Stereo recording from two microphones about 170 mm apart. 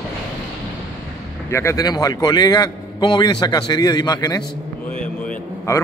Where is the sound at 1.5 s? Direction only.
15° left (ahead or behind).